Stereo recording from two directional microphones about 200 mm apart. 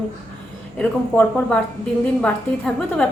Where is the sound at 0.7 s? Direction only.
5° left (ahead or behind).